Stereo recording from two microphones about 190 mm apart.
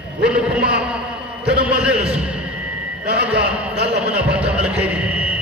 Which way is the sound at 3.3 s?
60° right (ahead or behind).